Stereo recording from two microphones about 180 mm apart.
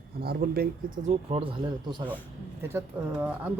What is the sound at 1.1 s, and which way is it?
Speech, 35° right (ahead or behind).